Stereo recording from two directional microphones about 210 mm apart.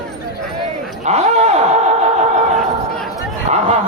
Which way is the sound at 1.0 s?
30° right (ahead or behind).